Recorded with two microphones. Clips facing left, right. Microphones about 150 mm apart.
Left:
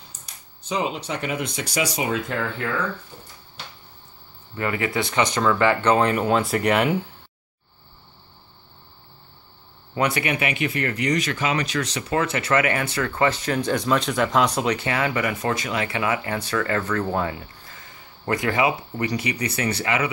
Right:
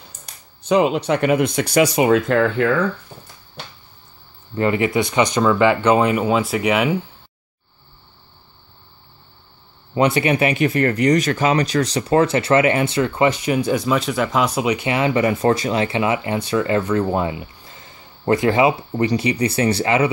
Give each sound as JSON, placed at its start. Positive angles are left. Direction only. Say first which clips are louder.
{"t": 0.7, "sound": "speech", "louder": "right 10 dB", "side_deg": -65}
{"t": 4.6, "sound": "speech", "louder": "right 7 dB", "side_deg": -25}
{"t": 9.9, "sound": "speech", "louder": "right 7 dB", "side_deg": -25}